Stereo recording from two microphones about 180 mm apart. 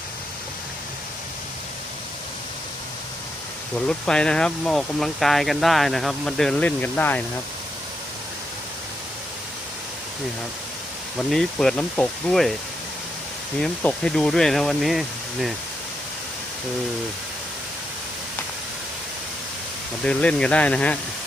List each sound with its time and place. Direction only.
3.8 s speech: 5° left (ahead or behind)
11.3 s speech: centre (ahead or behind)
13.6 s speech: 5° left (ahead or behind)
20.1 s speech: 5° left (ahead or behind)